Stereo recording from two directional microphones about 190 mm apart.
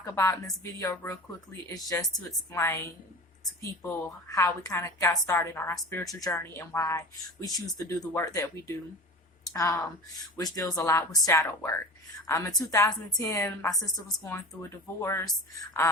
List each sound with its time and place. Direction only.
0.0 s a woman's voice: 20° left (ahead or behind)